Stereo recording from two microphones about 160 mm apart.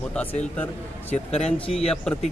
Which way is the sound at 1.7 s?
5° left (ahead or behind).